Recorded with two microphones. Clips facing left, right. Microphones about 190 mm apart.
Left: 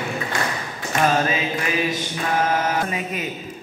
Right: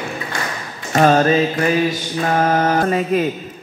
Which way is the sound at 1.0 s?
40° right (ahead or behind).